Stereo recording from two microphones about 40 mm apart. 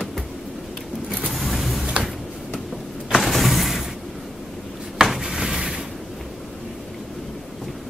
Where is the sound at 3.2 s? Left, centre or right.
Centre.